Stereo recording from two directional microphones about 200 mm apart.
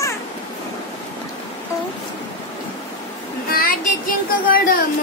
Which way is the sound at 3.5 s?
45° left (ahead or behind).